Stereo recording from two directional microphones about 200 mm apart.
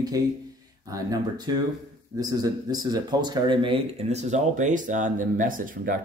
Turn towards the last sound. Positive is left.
turn(degrees=-45)  # may be behind; listen again after turning